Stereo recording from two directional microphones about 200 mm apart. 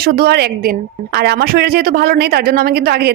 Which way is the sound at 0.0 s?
50° right (ahead or behind).